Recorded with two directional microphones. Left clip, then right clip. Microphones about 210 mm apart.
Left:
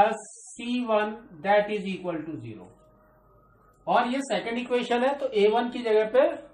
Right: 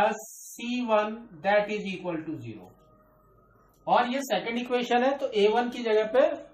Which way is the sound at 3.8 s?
10° left (ahead or behind).